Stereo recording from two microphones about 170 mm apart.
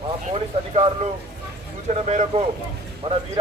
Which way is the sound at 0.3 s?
35° right (ahead or behind).